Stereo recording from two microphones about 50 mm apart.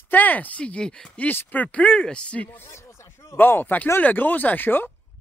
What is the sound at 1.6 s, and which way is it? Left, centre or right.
Speech, left.